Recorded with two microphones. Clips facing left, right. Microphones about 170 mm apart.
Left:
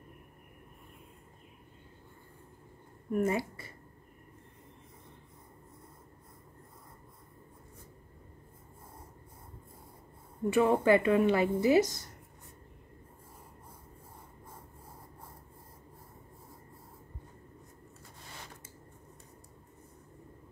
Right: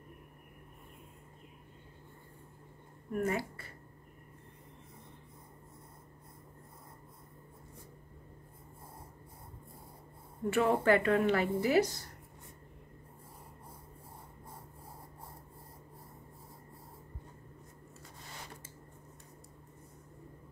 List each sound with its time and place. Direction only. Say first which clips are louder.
3.1 s speech: left 4 dB; 20° left (ahead or behind)
10.5 s speech: left 3 dB; 15° left (ahead or behind)